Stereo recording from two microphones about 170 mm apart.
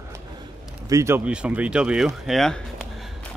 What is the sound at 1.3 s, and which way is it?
Speech, 5° right (ahead or behind).